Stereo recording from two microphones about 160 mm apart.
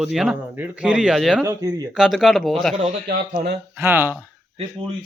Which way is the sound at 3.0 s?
65° right (ahead or behind).